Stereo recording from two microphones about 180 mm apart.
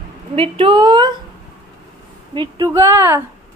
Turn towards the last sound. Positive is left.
turn(degrees=-15)  # may be behind; listen again after turning